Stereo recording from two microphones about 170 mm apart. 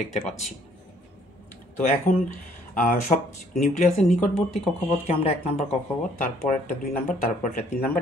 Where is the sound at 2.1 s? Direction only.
50° left (ahead or behind).